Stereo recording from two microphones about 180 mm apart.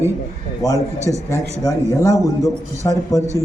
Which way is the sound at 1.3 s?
15° left (ahead or behind).